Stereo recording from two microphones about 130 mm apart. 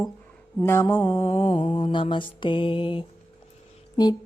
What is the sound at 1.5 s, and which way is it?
Mantra, 65° left (ahead or behind).